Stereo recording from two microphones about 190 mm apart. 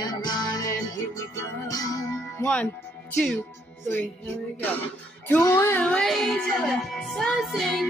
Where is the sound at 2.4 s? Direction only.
5° left (ahead or behind).